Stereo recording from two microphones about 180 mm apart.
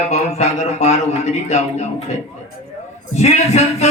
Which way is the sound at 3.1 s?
35° left (ahead or behind).